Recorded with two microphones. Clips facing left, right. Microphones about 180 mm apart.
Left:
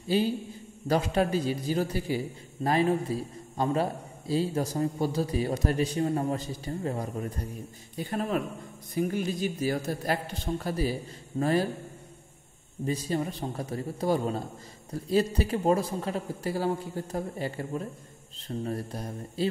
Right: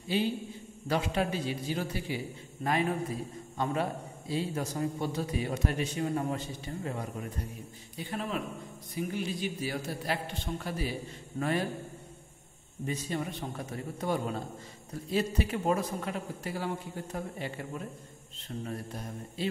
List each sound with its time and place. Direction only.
0.1 s a man's voice: 40° left (ahead or behind)
12.8 s a man's voice: 35° left (ahead or behind)